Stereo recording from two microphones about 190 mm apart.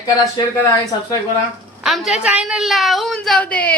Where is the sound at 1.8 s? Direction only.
Centre (ahead or behind).